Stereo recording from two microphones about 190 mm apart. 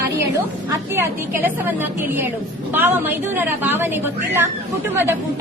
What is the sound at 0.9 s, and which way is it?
Speech, 10° right (ahead or behind).